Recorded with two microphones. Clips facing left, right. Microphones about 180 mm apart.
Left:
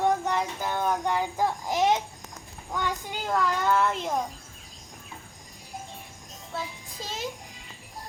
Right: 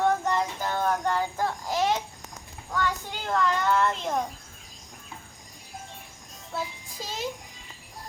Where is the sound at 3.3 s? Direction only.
5° left (ahead or behind).